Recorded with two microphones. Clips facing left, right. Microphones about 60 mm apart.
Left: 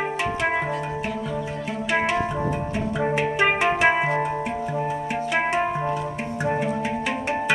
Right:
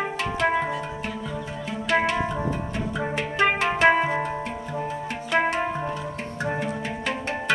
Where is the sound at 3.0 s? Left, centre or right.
Centre.